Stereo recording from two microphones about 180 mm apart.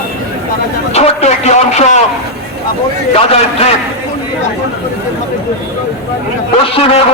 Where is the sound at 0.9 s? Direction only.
35° left (ahead or behind).